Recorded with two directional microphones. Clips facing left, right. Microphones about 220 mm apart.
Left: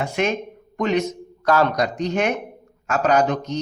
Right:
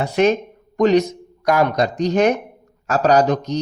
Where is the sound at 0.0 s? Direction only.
35° right (ahead or behind).